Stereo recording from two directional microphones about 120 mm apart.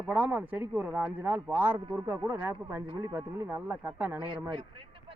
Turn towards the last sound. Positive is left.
turn(degrees=-15)  # may be behind; listen again after turning